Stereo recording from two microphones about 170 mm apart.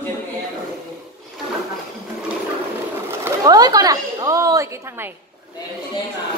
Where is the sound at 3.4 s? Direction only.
25° right (ahead or behind).